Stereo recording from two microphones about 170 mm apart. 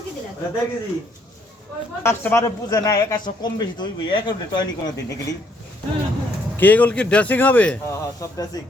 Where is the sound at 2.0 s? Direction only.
15° left (ahead or behind).